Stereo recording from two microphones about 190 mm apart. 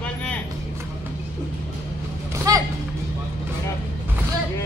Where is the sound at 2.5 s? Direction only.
20° right (ahead or behind).